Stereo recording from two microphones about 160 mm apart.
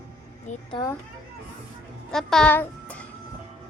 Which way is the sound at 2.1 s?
5° left (ahead or behind).